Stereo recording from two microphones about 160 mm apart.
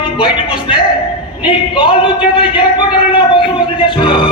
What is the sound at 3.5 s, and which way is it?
Music, 30° left (ahead or behind).